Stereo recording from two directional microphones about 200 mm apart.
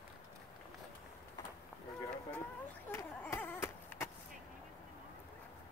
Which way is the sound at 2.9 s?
10° left (ahead or behind).